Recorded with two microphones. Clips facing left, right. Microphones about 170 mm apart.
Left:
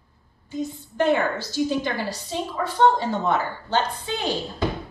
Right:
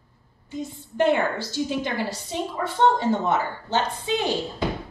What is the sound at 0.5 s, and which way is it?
A woman's voice, 25° right (ahead or behind).